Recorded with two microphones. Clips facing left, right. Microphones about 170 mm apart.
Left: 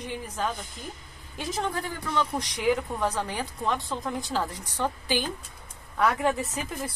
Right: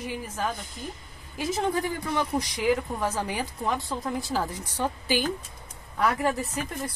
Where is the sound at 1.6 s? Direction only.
10° right (ahead or behind).